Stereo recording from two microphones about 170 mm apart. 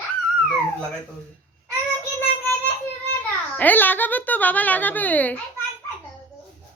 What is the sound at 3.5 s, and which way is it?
A woman's voice, 10° left (ahead or behind).